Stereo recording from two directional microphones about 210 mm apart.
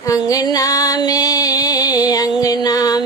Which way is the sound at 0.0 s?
15° left (ahead or behind).